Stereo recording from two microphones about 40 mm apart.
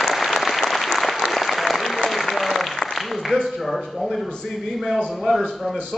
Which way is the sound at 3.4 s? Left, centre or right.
Centre.